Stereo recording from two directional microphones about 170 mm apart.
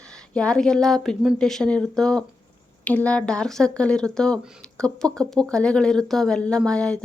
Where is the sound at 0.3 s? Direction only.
5° left (ahead or behind).